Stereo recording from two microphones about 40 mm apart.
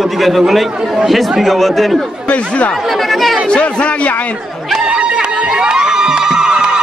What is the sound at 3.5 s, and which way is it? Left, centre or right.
Speech, left.